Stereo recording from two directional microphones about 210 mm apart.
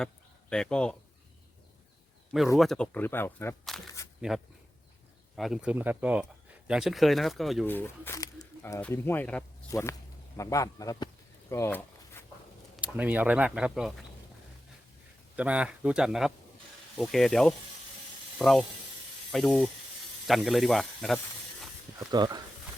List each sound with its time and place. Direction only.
0.5 s speech: 5° left (ahead or behind)
2.6 s speech: centre (ahead or behind)
4.3 s speech: centre (ahead or behind)
10.3 s a sound: 15° left (ahead or behind)
12.7 s speech: 5° right (ahead or behind)
15.4 s speech: 5° right (ahead or behind)
21.9 s speech: 20° right (ahead or behind)